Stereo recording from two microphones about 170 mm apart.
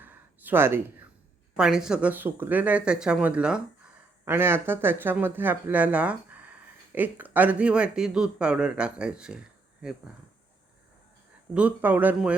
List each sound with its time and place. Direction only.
0.0 s a sound: 10° right (ahead or behind)
1.5 s speech: 5° right (ahead or behind)
11.5 s speech: 10° right (ahead or behind)